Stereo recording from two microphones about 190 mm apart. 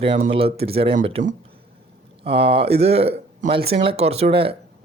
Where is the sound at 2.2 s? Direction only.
30° right (ahead or behind).